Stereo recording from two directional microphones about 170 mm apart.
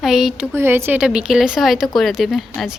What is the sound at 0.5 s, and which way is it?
A woman's voice, 15° right (ahead or behind).